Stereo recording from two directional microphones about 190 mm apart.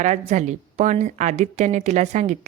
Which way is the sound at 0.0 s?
40° right (ahead or behind).